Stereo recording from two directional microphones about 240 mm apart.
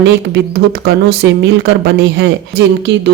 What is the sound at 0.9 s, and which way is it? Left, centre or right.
Speech, right.